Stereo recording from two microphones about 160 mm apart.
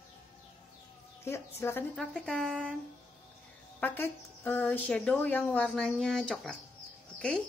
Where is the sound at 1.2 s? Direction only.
15° left (ahead or behind).